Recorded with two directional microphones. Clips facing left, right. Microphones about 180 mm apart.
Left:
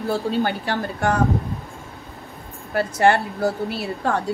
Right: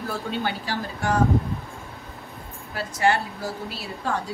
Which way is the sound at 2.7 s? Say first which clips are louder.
Left 5 dB; 55° left (ahead or behind).